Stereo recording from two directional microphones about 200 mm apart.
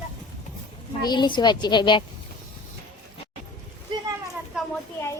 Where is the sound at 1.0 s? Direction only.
20° left (ahead or behind).